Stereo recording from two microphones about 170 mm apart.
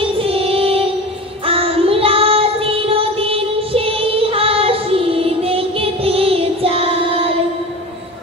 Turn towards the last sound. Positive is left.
turn(degrees=-35)  # may be behind; listen again after turning